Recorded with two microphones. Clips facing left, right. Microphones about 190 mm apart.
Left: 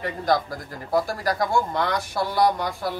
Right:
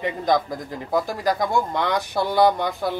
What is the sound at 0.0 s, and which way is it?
Speech, 20° right (ahead or behind).